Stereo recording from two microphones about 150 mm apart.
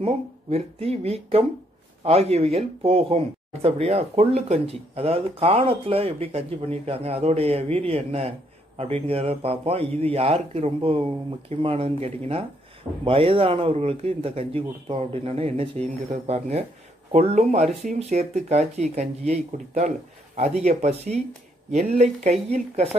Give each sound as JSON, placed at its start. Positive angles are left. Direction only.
{"t": 0.0, "sound": "a man's voice", "side_deg": -40}